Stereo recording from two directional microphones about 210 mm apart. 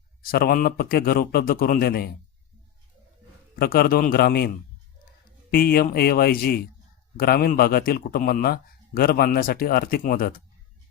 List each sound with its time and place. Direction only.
0.2 s a man's voice: 45° left (ahead or behind)
3.5 s a man's voice: 45° left (ahead or behind)